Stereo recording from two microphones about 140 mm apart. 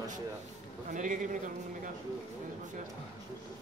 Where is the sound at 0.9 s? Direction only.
65° right (ahead or behind).